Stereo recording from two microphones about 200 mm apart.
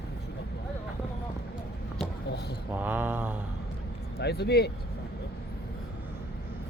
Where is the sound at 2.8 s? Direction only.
10° right (ahead or behind).